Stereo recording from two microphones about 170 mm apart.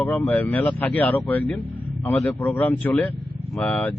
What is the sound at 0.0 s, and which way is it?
A man's voice, 10° left (ahead or behind).